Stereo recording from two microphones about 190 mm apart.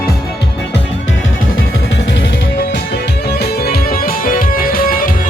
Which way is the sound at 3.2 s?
55° left (ahead or behind).